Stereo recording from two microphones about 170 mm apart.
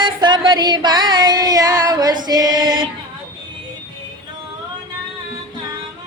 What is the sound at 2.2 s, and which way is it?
Choir, 25° right (ahead or behind).